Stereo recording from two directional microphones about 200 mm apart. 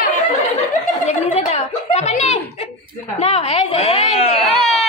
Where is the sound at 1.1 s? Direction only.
30° left (ahead or behind).